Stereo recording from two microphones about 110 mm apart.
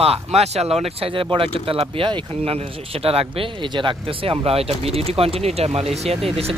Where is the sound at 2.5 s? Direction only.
65° right (ahead or behind).